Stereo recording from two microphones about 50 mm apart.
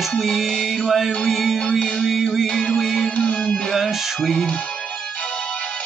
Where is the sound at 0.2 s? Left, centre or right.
Centre.